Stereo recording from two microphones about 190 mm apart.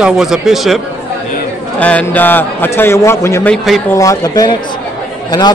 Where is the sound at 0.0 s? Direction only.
Centre (ahead or behind).